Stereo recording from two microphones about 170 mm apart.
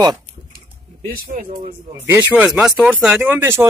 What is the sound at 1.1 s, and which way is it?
Speech, 55° right (ahead or behind).